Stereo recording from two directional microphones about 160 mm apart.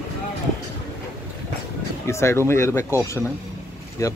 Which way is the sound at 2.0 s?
15° left (ahead or behind).